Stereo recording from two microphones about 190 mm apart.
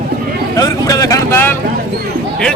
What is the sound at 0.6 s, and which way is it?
Speech, 20° left (ahead or behind).